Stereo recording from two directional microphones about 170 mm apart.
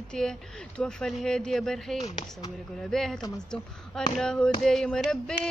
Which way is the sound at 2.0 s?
20° left (ahead or behind).